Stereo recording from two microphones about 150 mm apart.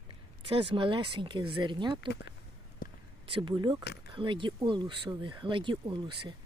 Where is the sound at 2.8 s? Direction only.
75° left (ahead or behind).